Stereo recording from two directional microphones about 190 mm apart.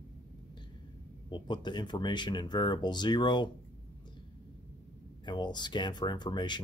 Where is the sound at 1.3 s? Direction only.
25° left (ahead or behind).